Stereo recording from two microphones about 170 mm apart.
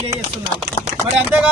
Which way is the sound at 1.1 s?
10° right (ahead or behind).